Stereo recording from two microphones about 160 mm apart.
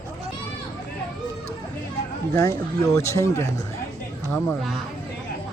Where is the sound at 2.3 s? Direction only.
20° left (ahead or behind).